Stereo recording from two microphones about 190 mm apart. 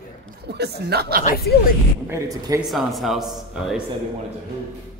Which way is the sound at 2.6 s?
Centre (ahead or behind).